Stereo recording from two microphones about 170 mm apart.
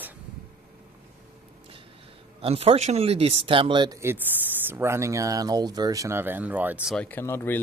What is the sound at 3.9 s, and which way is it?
Speech, 15° right (ahead or behind).